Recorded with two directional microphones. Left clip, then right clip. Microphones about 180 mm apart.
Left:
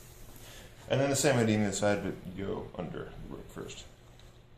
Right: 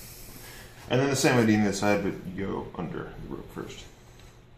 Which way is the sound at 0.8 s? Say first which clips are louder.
Right 3 dB; 35° left (ahead or behind).